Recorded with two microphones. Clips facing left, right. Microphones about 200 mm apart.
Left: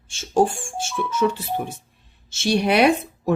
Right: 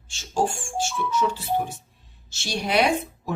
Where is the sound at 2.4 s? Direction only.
60° left (ahead or behind).